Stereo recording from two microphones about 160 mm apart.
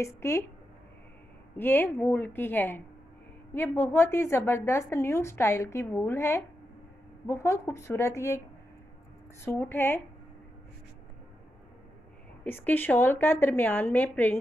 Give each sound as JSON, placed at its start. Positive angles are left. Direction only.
{"t": 0.0, "sound": "a woman's voice", "side_deg": 15}
{"t": 1.6, "sound": "a woman's voice", "side_deg": 15}
{"t": 9.4, "sound": "a woman's voice", "side_deg": 15}
{"t": 12.4, "sound": "a woman's voice", "side_deg": 10}